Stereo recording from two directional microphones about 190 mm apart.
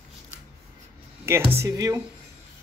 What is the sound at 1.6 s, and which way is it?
Speech, 20° right (ahead or behind).